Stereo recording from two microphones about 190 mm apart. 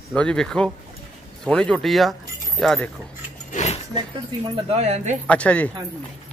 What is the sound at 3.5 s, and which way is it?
Dog, 35° left (ahead or behind).